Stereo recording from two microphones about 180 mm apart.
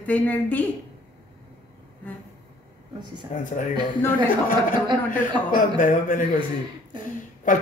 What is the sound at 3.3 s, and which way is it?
Speech, 45° left (ahead or behind).